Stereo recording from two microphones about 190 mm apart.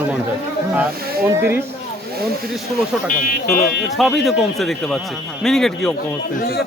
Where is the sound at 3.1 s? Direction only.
50° left (ahead or behind).